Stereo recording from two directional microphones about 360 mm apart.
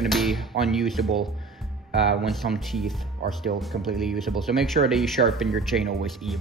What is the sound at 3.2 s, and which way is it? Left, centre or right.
Speech, right.